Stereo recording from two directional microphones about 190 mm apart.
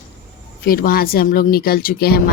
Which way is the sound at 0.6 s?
50° left (ahead or behind).